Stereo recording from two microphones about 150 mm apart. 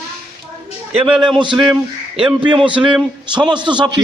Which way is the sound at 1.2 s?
30° right (ahead or behind).